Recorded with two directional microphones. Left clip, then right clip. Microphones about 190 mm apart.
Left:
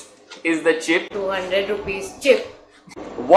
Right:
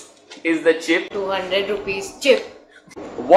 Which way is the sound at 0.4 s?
15° left (ahead or behind).